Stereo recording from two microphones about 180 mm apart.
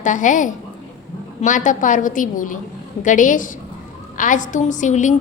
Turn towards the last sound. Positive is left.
turn(degrees=45)  # may be behind; listen again after turning